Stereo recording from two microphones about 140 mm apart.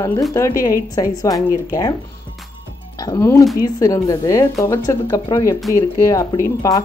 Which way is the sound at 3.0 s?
20° left (ahead or behind).